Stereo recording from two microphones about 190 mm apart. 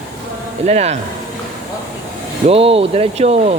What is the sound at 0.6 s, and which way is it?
Speech, 35° right (ahead or behind).